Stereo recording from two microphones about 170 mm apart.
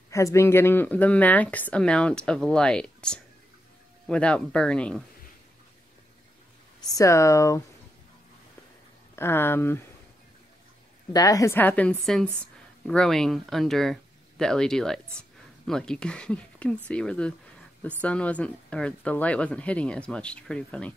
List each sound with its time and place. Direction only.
0.1 s speech: 15° left (ahead or behind)
6.9 s speech: 20° left (ahead or behind)
9.1 s speech: 15° left (ahead or behind)
11.1 s speech: 20° left (ahead or behind)